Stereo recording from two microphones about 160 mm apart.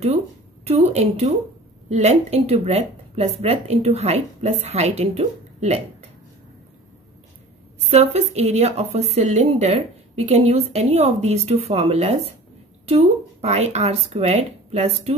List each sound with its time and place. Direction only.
0.7 s a woman's voice: 45° right (ahead or behind)
7.9 s a woman's voice: 40° right (ahead or behind)